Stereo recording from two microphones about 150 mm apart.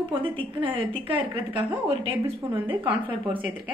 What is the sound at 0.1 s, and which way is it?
A woman's voice, 35° right (ahead or behind).